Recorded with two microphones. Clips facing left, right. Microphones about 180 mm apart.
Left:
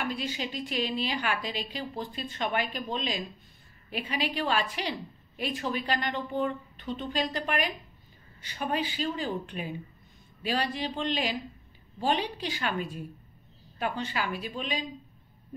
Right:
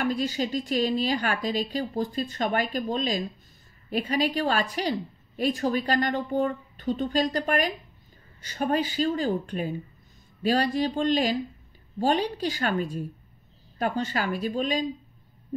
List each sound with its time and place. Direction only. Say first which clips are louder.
0.0 s a woman's voice: right 6 dB; 40° right (ahead or behind)